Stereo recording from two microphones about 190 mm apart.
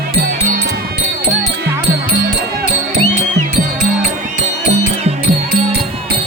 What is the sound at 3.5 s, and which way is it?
Music, 40° right (ahead or behind).